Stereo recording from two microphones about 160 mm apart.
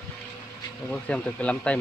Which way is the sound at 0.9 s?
10° left (ahead or behind).